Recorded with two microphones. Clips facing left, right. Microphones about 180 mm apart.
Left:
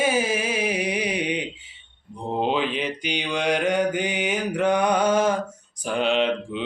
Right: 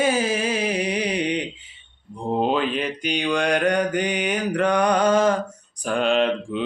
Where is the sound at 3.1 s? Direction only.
5° left (ahead or behind).